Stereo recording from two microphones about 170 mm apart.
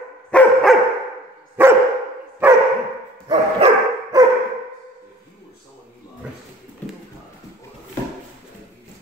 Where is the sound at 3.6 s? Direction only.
35° right (ahead or behind).